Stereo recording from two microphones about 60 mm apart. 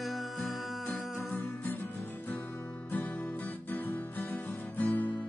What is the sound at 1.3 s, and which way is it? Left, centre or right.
Music, left.